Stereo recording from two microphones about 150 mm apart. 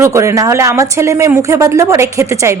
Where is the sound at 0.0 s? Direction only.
20° right (ahead or behind).